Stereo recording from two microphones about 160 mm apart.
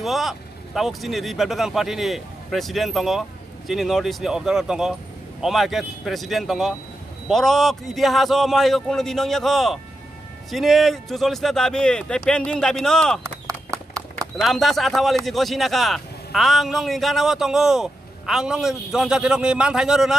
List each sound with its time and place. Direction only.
0.0 s speech: centre (ahead or behind)
13.2 s horse: 20° right (ahead or behind)
14.3 s speech: centre (ahead or behind)